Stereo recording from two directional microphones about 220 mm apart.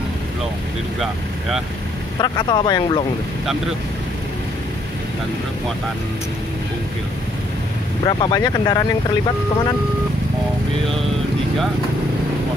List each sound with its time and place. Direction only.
2.2 s speech: 20° left (ahead or behind)
8.0 s speech: 20° left (ahead or behind)